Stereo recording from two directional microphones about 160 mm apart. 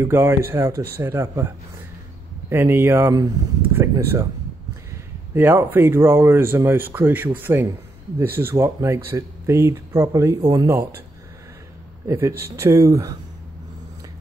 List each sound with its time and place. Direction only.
0.0 s speech: 15° right (ahead or behind)
2.5 s speech: 15° right (ahead or behind)
10.7 s speech: 15° right (ahead or behind)
12.1 s speech: 15° right (ahead or behind)